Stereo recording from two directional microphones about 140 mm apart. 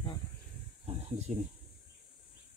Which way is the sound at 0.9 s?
45° right (ahead or behind).